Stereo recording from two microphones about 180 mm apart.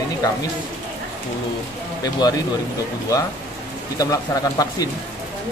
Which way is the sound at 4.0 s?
20° left (ahead or behind).